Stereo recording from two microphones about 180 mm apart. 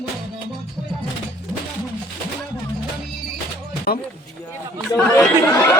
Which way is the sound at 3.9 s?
55° left (ahead or behind).